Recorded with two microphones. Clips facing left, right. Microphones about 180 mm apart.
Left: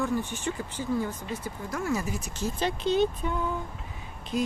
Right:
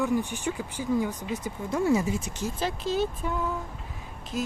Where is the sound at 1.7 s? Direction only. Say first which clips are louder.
Right 6 dB; 25° right (ahead or behind).